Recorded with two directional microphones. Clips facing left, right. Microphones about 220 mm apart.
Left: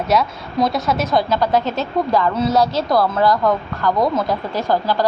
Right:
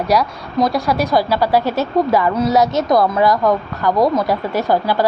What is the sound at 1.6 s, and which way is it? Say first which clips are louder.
Speech: right 4 dB; 20° left (ahead or behind).